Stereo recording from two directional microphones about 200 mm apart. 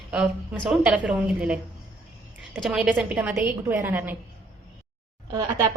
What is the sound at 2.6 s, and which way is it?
A woman's voice, centre (ahead or behind).